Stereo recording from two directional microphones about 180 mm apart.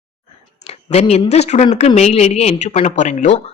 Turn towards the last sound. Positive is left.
turn(degrees=40)  # may be behind; listen again after turning